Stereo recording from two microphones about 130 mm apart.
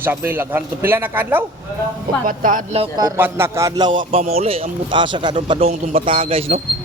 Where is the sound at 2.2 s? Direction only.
90° right.